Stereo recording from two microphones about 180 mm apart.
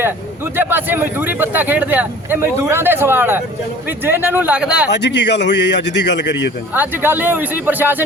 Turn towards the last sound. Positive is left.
turn(degrees=-10)  # may be behind; listen again after turning